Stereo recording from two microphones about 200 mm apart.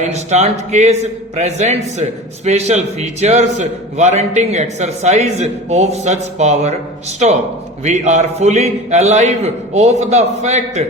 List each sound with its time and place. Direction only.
0.0 s a man's voice: 35° right (ahead or behind)
7.9 s a man's voice: 35° right (ahead or behind)